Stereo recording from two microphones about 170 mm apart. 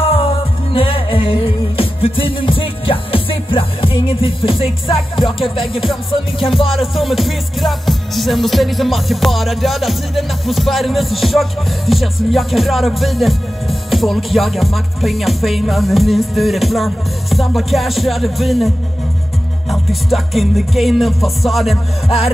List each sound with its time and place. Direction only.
0.0 s music: 35° left (ahead or behind)
6.8 s music: centre (ahead or behind)
19.7 s music: centre (ahead or behind)